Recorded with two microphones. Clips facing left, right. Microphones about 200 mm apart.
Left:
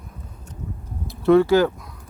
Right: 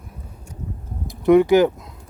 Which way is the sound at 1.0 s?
15° right (ahead or behind).